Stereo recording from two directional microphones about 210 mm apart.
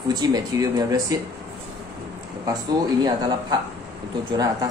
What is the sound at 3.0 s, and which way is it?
A man's voice, 20° right (ahead or behind).